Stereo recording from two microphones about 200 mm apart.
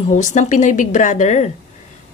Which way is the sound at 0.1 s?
40° left (ahead or behind).